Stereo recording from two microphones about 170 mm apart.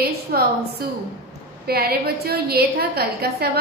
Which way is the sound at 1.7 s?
65° right (ahead or behind).